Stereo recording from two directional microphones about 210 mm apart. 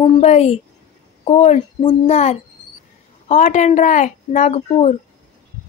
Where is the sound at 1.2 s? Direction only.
30° left (ahead or behind).